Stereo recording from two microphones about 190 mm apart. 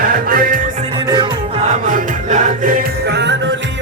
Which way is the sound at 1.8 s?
40° right (ahead or behind).